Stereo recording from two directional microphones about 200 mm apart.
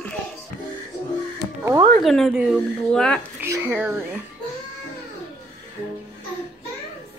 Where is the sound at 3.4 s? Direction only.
10° right (ahead or behind).